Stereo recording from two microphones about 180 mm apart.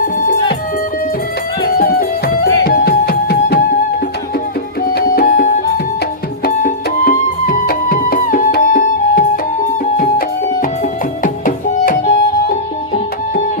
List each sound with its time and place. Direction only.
1.8 s music: 55° left (ahead or behind)
4.9 s music: 55° left (ahead or behind)